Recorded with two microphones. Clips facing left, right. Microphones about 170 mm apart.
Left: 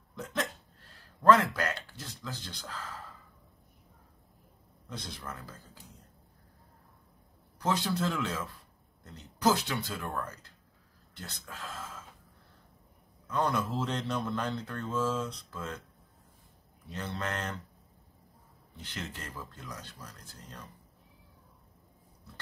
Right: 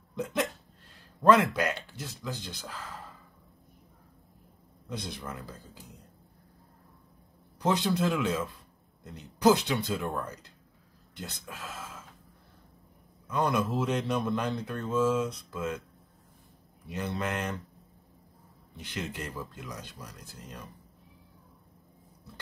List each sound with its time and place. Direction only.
0.1 s speech: 15° right (ahead or behind)
4.8 s speech: 15° right (ahead or behind)
7.6 s speech: 15° right (ahead or behind)
13.3 s speech: 10° right (ahead or behind)
16.8 s speech: 15° right (ahead or behind)
18.8 s speech: 15° right (ahead or behind)